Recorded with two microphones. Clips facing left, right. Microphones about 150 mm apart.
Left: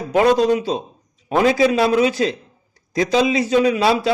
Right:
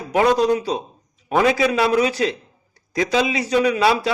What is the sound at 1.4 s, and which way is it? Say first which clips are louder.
A man's voice: left 2 dB; 30° left (ahead or behind).